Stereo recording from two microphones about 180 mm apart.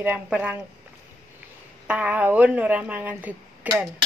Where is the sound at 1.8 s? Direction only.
5° right (ahead or behind).